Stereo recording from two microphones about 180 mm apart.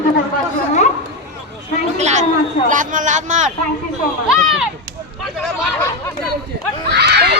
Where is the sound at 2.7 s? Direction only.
45° right (ahead or behind).